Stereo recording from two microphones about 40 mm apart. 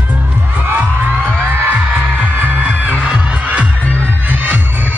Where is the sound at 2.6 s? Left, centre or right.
Right.